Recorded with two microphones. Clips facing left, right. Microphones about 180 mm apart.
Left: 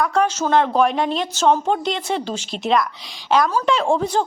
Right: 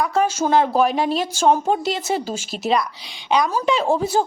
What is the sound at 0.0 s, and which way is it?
A woman's voice, centre (ahead or behind).